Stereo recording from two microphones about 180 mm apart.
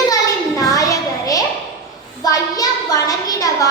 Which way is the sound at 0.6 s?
20° left (ahead or behind).